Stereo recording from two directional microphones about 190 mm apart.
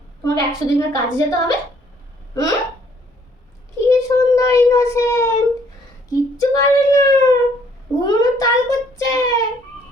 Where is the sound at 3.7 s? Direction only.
15° left (ahead or behind).